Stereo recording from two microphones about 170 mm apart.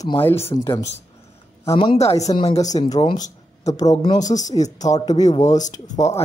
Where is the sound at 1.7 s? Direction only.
35° left (ahead or behind).